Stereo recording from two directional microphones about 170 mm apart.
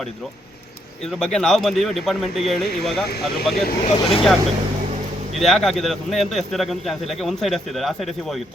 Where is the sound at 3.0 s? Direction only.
70° left (ahead or behind).